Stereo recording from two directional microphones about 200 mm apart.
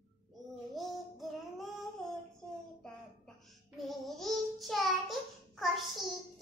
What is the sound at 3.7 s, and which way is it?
Child singing, centre (ahead or behind).